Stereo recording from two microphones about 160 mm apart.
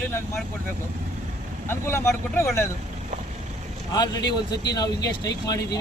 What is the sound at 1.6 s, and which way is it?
Speech, 15° left (ahead or behind).